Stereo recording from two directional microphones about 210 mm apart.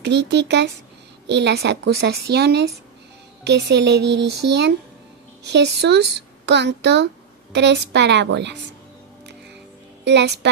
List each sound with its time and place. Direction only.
0.0 s a woman's voice: 55° right (ahead or behind)
10.0 s speech: 55° right (ahead or behind)